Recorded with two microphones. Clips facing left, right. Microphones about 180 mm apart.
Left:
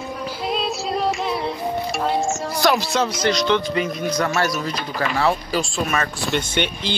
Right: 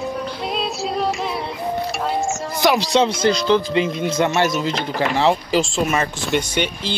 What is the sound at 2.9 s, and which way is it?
Speech, 25° right (ahead or behind).